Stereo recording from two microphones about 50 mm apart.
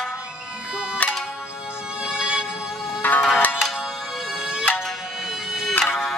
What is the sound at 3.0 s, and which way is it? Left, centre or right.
Music, left.